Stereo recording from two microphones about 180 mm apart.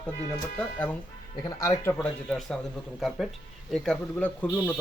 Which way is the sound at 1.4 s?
20° left (ahead or behind).